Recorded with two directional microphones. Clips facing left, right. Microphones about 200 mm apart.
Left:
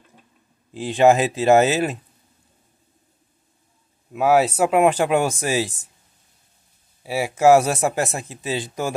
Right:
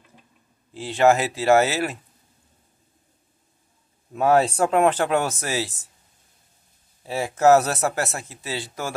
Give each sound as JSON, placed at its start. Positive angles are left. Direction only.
{"t": 0.7, "sound": "speech", "side_deg": 15}
{"t": 4.1, "sound": "speech", "side_deg": 5}
{"t": 7.0, "sound": "speech", "side_deg": 10}